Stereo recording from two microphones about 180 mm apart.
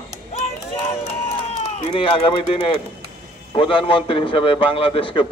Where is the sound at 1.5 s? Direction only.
30° left (ahead or behind).